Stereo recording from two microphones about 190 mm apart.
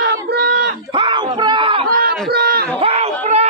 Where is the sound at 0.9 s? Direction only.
25° right (ahead or behind).